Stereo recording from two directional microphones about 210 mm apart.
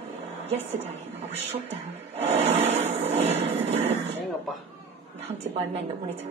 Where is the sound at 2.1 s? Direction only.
30° right (ahead or behind).